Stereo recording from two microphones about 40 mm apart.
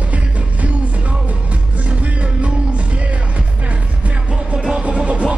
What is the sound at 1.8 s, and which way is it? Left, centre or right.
Music, right.